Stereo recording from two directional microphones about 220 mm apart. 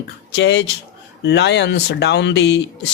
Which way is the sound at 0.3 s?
50° left (ahead or behind).